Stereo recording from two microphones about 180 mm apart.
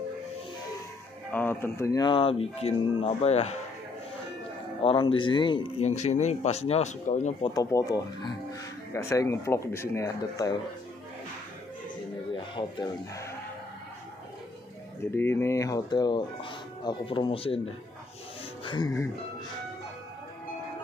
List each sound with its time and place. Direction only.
1.3 s speech: 10° left (ahead or behind); by 3.4 s 35° left (ahead or behind)
4.8 s speech: 30° left (ahead or behind)
7.5 s speech: 20° left (ahead or behind)
12.4 s speech: 25° left (ahead or behind)
15.1 s speech: 10° left (ahead or behind); by 17.6 s 30° left (ahead or behind)
18.6 s music: 25° left (ahead or behind)